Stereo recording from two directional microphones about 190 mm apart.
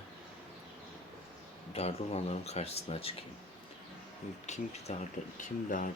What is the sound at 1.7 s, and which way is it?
Speech, 35° left (ahead or behind).